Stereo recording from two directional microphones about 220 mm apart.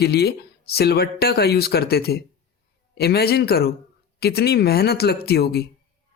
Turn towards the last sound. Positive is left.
turn(degrees=45)  # may be behind; listen again after turning